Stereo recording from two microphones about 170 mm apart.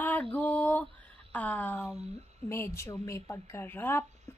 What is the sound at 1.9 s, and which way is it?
Speech, 40° right (ahead or behind).